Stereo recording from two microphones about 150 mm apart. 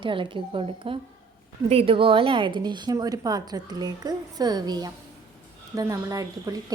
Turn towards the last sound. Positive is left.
turn(degrees=-25)  # may be behind; listen again after turning